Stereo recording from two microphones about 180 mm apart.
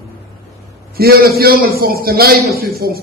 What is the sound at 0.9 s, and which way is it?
A man's voice, 55° right (ahead or behind).